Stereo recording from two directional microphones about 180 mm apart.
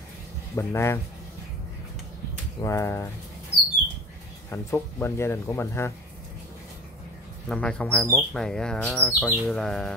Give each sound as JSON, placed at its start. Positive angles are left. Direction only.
{"t": 0.6, "sound": "speech", "side_deg": 15}
{"t": 2.6, "sound": "speech", "side_deg": 15}
{"t": 4.5, "sound": "speech", "side_deg": 15}
{"t": 7.4, "sound": "speech", "side_deg": 5}